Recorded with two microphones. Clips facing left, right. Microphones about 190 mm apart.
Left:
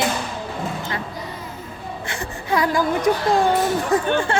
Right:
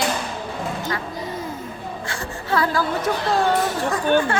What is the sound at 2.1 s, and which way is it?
Whimper, 15° left (ahead or behind).